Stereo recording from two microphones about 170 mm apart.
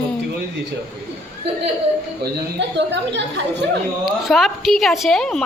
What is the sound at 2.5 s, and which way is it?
A woman's voice, 90° right.